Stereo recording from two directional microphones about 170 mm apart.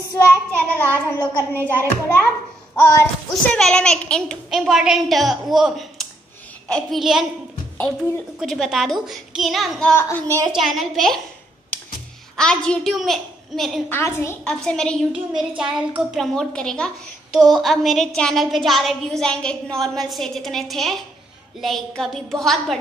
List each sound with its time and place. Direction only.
0.2 s child singing: 10° left (ahead or behind)
3.5 s a woman's voice: 5° left (ahead or behind)
8.4 s a woman's voice: centre (ahead or behind)
9.9 s child singing: 15° left (ahead or behind)
10.2 s a woman's voice: 15° right (ahead or behind)
10.5 s a woman's voice: centre (ahead or behind)
12.4 s a woman's voice: 5° left (ahead or behind)
13.8 s child singing: 15° left (ahead or behind)
14.4 s a woman's voice: 5° left (ahead or behind)